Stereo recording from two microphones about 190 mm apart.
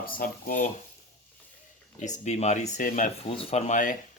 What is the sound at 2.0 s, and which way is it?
Speech, 35° left (ahead or behind).